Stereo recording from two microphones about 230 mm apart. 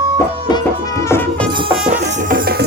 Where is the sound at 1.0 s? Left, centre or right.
Centre.